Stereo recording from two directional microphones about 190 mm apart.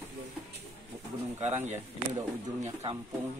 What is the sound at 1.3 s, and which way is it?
Speech, 35° right (ahead or behind).